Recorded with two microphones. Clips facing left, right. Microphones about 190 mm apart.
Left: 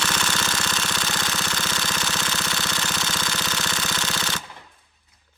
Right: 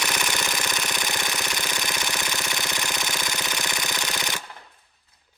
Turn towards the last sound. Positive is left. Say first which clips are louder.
# left 1 dB
turn(degrees=-15)  # may be behind; listen again after turning